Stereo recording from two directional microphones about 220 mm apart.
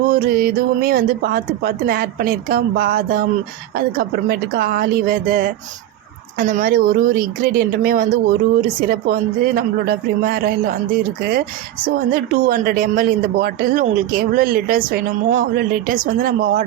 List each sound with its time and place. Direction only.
0.0 s speech: 40° right (ahead or behind)